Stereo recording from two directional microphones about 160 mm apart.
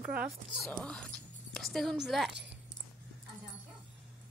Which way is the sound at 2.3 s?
90° right.